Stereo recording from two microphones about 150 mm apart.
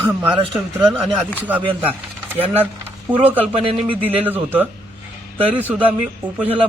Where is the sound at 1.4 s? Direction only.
10° right (ahead or behind).